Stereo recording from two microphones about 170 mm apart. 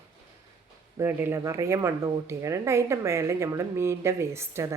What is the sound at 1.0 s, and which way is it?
A woman's voice, 15° right (ahead or behind).